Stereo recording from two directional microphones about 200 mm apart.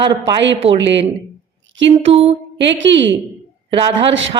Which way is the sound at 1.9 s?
30° right (ahead or behind).